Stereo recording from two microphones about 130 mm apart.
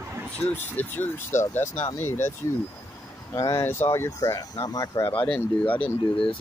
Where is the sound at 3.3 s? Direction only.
25° left (ahead or behind).